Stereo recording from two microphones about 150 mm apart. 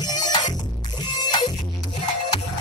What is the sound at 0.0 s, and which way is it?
Music, 25° left (ahead or behind).